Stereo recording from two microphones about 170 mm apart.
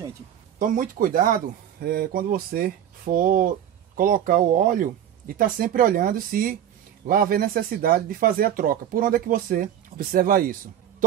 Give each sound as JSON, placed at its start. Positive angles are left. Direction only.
{"t": 0.6, "sound": "speech", "side_deg": -55}
{"t": 1.8, "sound": "speech", "side_deg": -65}